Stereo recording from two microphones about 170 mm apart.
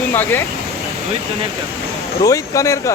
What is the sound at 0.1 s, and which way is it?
Speech, 15° left (ahead or behind).